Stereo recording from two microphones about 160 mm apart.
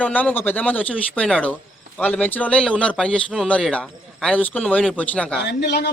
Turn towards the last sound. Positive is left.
turn(degrees=90)